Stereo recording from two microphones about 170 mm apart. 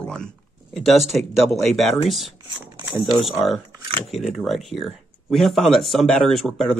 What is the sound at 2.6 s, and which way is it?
Speech, 25° right (ahead or behind).